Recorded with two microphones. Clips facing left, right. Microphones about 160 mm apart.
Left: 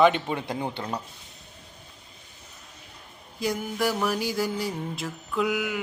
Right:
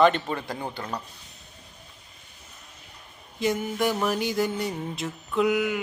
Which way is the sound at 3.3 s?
Centre (ahead or behind).